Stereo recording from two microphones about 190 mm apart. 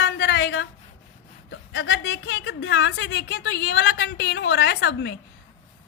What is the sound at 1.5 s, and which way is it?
A woman's voice, 70° left (ahead or behind).